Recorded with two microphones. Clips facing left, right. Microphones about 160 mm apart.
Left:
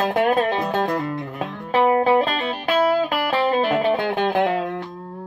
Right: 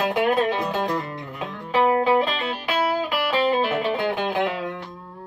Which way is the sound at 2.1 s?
45° left (ahead or behind).